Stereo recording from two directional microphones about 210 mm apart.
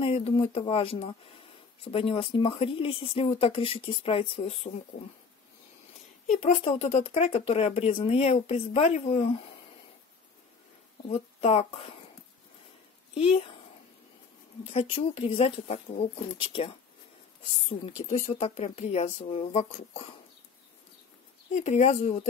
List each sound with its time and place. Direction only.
0.0 s speech: 30° left (ahead or behind)
6.3 s speech: 30° left (ahead or behind)
11.1 s speech: 30° left (ahead or behind)
13.1 s speech: 30° left (ahead or behind)
14.7 s speech: 25° left (ahead or behind)
21.5 s speech: 35° left (ahead or behind)